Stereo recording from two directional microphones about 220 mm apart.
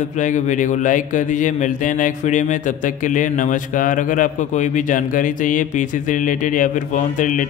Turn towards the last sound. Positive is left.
turn(degrees=35)  # may be behind; listen again after turning